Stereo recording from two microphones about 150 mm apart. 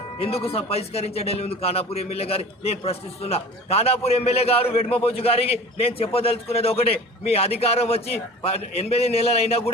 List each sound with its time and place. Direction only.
0.2 s a man's voice: 40° left (ahead or behind)